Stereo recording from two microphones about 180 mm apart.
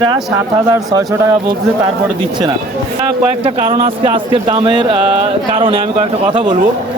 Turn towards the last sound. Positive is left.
turn(degrees=-25)  # may be behind; listen again after turning